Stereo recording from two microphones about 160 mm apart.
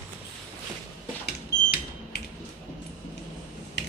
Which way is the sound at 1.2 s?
85° left.